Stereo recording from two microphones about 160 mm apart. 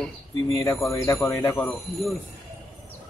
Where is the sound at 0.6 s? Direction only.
20° left (ahead or behind).